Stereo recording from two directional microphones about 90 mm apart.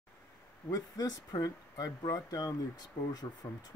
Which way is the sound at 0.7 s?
45° left (ahead or behind).